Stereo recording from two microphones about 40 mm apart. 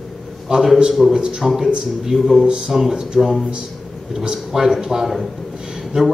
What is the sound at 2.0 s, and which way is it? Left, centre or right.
Speech, centre.